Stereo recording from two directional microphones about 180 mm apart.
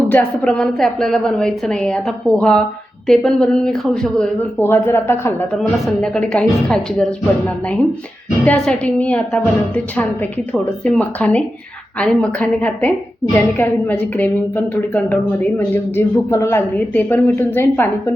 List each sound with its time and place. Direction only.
0.1 s a woman's voice: 5° left (ahead or behind)
5.5 s a woman's voice: centre (ahead or behind)